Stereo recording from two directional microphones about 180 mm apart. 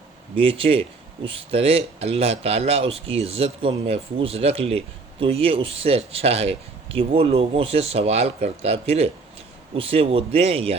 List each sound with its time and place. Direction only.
0.3 s speech: 30° right (ahead or behind)